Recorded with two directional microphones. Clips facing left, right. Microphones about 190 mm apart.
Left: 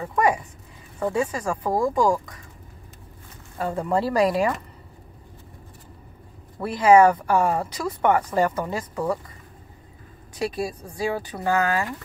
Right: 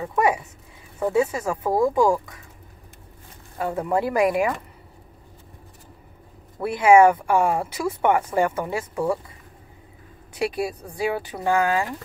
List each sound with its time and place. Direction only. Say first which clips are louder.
0.0 s speech: even; 5° right (ahead or behind)
3.5 s speech: even; 10° right (ahead or behind)
6.6 s speech: right 1 dB; 10° right (ahead or behind)
10.7 s speech: right 1 dB; 15° right (ahead or behind)